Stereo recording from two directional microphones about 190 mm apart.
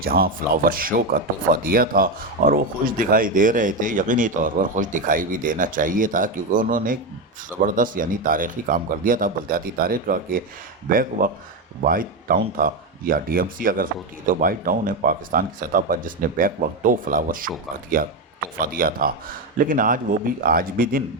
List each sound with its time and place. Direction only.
0.0 s speech: 50° right (ahead or behind)